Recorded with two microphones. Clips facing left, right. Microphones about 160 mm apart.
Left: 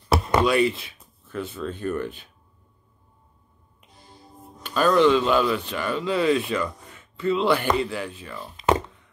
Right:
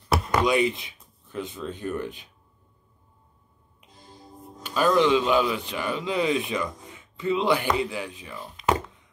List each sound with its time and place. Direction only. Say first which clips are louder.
0.1 s a sound: left 3 dB; 30° left (ahead or behind)
0.5 s speech: left 2 dB; 15° right (ahead or behind)
4.6 s a man's voice: left 2 dB; 10° right (ahead or behind)